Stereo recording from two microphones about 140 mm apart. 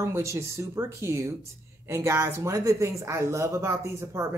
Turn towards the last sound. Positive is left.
turn(degrees=-20)  # may be behind; listen again after turning